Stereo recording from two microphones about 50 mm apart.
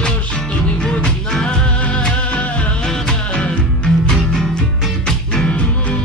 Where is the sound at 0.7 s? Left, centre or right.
Left.